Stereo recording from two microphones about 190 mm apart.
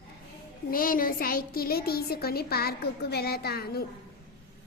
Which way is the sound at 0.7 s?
50° left (ahead or behind).